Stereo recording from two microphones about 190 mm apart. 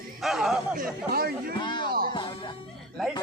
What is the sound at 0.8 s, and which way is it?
Speech, 50° right (ahead or behind).